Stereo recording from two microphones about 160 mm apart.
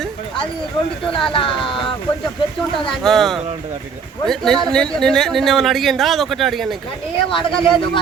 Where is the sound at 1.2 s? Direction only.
30° left (ahead or behind).